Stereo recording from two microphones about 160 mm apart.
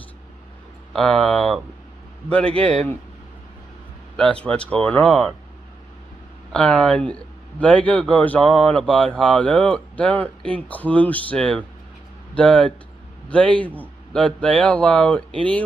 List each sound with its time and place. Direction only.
0.9 s a man's voice: 5° left (ahead or behind)
4.2 s a man's voice: 5° left (ahead or behind)
6.5 s a man's voice: 5° left (ahead or behind)